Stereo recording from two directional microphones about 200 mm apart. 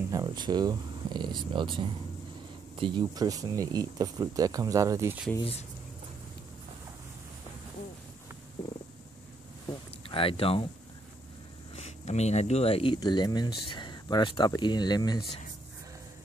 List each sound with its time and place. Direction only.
0.1 s speech: 20° right (ahead or behind)
5.4 s speech: 30° left (ahead or behind)
9.7 s a sound: 25° left (ahead or behind)
11.7 s speech: 35° left (ahead or behind)